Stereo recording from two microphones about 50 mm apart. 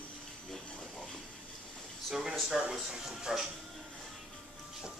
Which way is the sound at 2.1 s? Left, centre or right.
Centre.